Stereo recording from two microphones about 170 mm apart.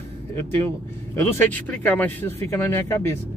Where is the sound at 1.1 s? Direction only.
10° left (ahead or behind).